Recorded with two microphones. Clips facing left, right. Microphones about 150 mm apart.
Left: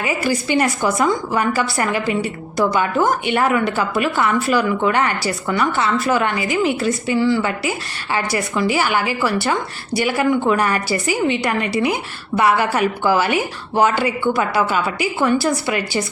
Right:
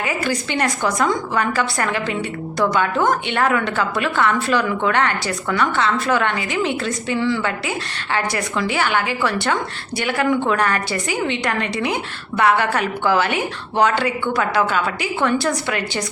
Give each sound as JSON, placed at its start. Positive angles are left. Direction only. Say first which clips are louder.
{"t": 0.0, "sound": "a woman's voice", "louder": "left 2 dB", "side_deg": 10}